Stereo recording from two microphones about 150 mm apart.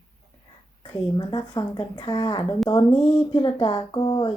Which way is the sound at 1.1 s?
30° left (ahead or behind).